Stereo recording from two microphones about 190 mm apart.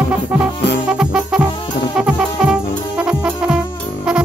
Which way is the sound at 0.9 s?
5° right (ahead or behind).